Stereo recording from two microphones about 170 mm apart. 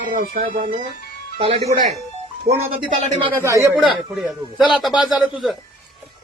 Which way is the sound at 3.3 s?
15° right (ahead or behind).